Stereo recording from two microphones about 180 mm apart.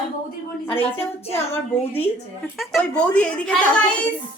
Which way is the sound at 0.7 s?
35° left (ahead or behind).